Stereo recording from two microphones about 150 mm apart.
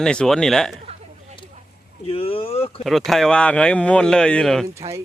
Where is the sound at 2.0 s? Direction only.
40° left (ahead or behind).